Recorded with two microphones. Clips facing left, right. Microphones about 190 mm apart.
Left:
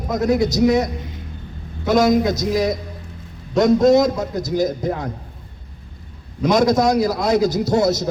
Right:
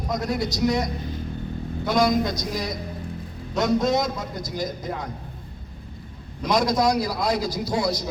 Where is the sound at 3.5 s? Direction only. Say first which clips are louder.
Left 8 dB; 45° left (ahead or behind).